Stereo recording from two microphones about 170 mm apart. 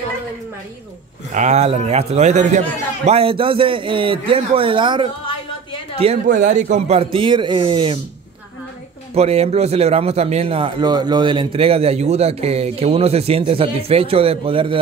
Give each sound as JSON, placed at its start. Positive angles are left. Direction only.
{"t": 1.3, "sound": "a man's voice", "side_deg": -40}
{"t": 6.2, "sound": "a man's voice", "side_deg": -50}
{"t": 9.1, "sound": "a man's voice", "side_deg": -35}